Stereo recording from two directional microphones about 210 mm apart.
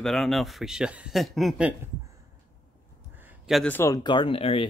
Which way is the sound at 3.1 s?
10° right (ahead or behind).